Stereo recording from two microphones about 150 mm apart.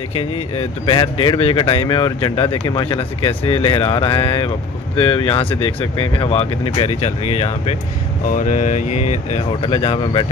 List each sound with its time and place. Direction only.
0.8 s speech: 35° left (ahead or behind)
8.4 s speech: 60° left (ahead or behind); by 10.2 s 40° left (ahead or behind)